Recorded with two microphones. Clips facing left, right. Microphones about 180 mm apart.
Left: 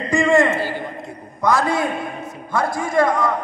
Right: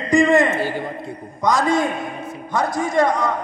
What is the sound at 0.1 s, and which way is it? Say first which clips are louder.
Speech: right 1 dB; 20° right (ahead or behind).